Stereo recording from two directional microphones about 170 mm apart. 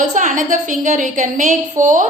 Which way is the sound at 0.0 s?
45° right (ahead or behind).